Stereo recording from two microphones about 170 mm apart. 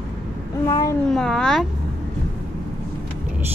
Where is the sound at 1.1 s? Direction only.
Centre (ahead or behind).